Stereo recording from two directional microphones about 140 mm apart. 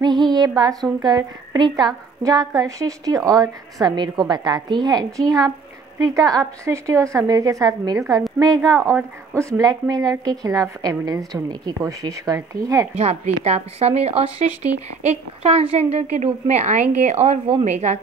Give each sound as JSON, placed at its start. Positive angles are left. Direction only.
{"t": 0.0, "sound": "a sound", "side_deg": -30}
{"t": 1.0, "sound": "a woman's voice", "side_deg": -30}
{"t": 12.9, "sound": "speech", "side_deg": -50}